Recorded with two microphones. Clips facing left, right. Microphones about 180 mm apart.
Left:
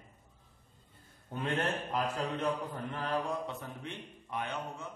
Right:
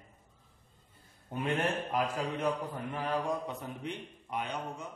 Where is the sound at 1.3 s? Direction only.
10° right (ahead or behind).